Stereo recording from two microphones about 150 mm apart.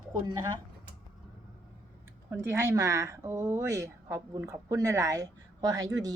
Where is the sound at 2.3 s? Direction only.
15° right (ahead or behind).